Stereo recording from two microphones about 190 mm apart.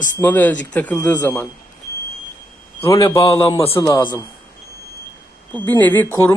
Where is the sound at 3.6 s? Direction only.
30° left (ahead or behind).